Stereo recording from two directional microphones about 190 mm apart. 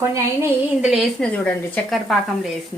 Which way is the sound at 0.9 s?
Centre (ahead or behind).